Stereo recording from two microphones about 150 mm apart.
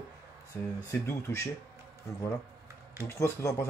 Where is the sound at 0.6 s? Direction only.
15° left (ahead or behind).